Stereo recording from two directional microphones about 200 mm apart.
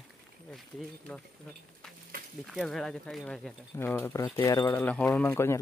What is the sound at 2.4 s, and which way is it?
Speech, centre (ahead or behind).